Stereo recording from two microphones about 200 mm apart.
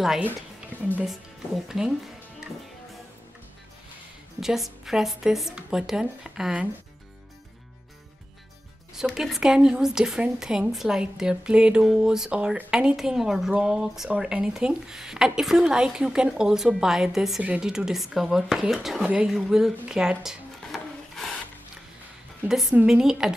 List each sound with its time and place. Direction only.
0.0 s a woman's voice: centre (ahead or behind)
4.4 s a woman's voice: centre (ahead or behind)
8.9 s a woman's voice: centre (ahead or behind)
22.5 s a woman's voice: centre (ahead or behind)